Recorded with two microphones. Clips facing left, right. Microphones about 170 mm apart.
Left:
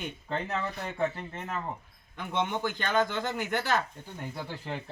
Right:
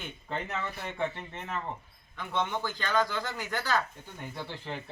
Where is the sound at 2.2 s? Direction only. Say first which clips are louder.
Left 2 dB; 15° left (ahead or behind).